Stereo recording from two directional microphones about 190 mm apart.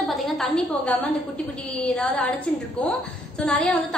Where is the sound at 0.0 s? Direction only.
Centre (ahead or behind).